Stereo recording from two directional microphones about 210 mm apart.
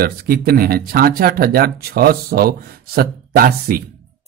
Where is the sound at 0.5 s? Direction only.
45° right (ahead or behind).